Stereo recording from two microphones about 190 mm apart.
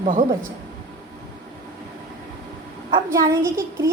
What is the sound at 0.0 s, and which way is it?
Speech, 40° right (ahead or behind).